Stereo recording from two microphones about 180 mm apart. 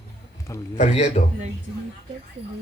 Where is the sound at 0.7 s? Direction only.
35° left (ahead or behind).